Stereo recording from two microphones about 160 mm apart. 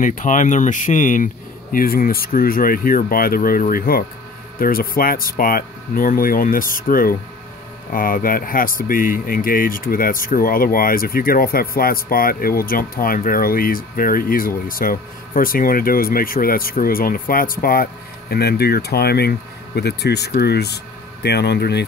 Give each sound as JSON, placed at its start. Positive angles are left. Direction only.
{"t": 0.0, "sound": "speech", "side_deg": 55}
{"t": 18.3, "sound": "speech", "side_deg": 75}